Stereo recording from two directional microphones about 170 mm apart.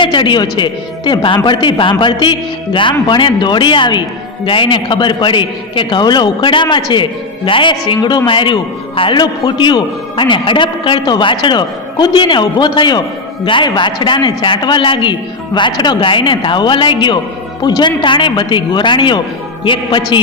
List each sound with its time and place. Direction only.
0.0 s a man's voice: 30° left (ahead or behind)